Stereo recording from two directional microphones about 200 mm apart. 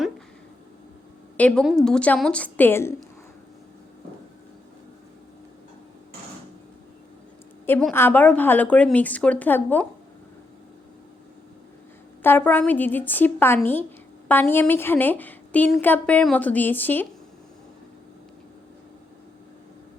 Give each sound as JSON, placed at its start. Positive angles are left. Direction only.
{"t": 1.4, "sound": "a woman's voice", "side_deg": 5}
{"t": 7.7, "sound": "a woman's voice", "side_deg": 5}
{"t": 12.2, "sound": "a woman's voice", "side_deg": 10}